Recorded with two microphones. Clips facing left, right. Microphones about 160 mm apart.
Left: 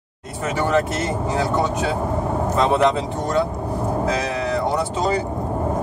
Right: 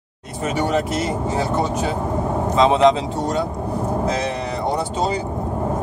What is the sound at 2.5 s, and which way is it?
Speech, 20° right (ahead or behind).